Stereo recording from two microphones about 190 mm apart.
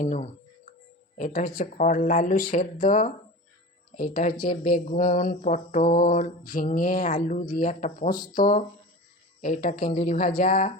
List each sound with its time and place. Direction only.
0.0 s speech: 40° left (ahead or behind)
1.1 s mantra: 45° left (ahead or behind)